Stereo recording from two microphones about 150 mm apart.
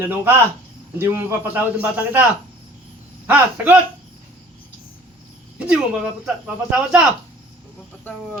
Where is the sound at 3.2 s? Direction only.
10° right (ahead or behind).